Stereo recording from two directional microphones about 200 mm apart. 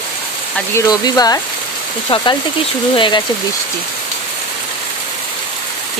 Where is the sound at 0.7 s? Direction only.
15° left (ahead or behind).